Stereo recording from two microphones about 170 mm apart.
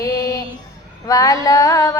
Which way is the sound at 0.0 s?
20° left (ahead or behind).